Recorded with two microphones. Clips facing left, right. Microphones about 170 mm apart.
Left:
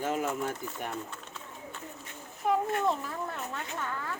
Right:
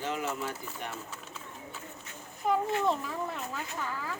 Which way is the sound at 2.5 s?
Centre (ahead or behind).